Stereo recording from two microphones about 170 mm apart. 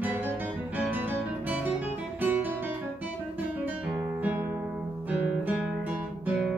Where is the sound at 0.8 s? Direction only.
10° right (ahead or behind).